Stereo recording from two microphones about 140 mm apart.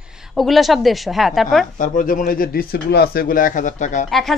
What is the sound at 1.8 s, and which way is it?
A man's voice, 75° left (ahead or behind).